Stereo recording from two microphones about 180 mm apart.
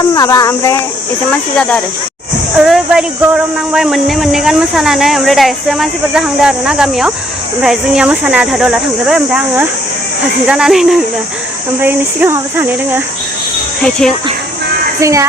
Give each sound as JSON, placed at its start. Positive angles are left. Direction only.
{"t": 0.0, "sound": "speech", "side_deg": 20}
{"t": 15.0, "sound": "speech", "side_deg": -15}